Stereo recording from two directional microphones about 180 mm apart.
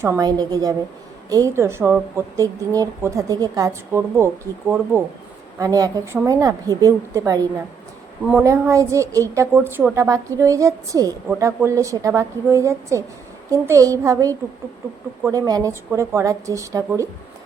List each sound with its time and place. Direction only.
0.0 s a woman's voice: 20° right (ahead or behind)
8.4 s speech: 15° right (ahead or behind)